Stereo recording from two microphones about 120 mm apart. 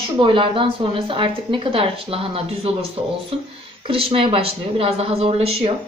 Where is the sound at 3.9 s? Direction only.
50° right (ahead or behind).